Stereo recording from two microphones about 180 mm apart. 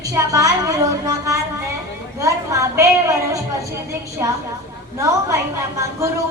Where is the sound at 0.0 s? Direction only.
20° right (ahead or behind).